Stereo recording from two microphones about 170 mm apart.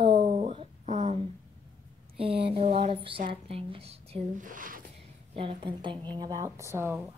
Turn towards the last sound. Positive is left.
turn(degrees=-10)  # may be behind; listen again after turning